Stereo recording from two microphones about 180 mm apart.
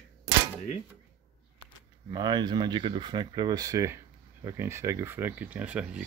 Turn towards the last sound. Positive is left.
turn(degrees=-10)  # may be behind; listen again after turning